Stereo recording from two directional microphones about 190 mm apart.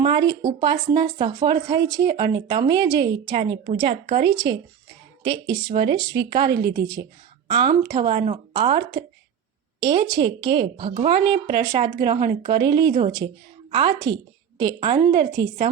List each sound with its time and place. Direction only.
0.0 s speech: 25° right (ahead or behind)
6.4 s a woman's voice: 55° right (ahead or behind)
6.7 s speech: 20° right (ahead or behind)
9.8 s speech: 25° right (ahead or behind)
13.2 s a woman's voice: 30° right (ahead or behind)